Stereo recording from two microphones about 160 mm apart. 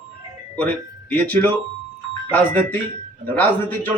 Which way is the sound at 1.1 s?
10° left (ahead or behind).